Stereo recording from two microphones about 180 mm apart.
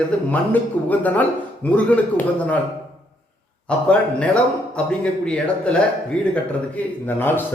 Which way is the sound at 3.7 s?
5° left (ahead or behind).